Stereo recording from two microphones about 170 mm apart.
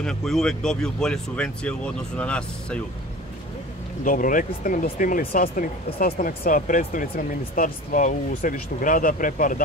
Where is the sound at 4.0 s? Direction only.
55° left (ahead or behind).